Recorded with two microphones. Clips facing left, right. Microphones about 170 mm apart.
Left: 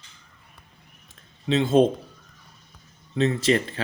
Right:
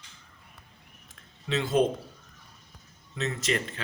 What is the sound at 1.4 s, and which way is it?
Speech, 25° left (ahead or behind).